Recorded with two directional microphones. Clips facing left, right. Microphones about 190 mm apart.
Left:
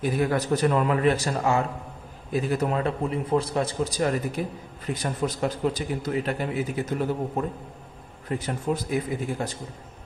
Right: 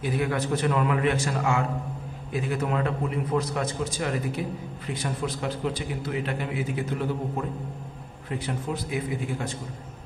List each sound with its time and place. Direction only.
0.0 s a man's voice: 40° left (ahead or behind)
8.3 s a man's voice: 45° left (ahead or behind)